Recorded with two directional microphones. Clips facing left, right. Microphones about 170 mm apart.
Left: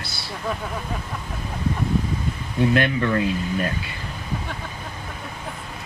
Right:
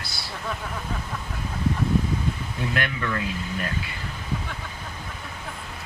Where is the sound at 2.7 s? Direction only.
30° left (ahead or behind).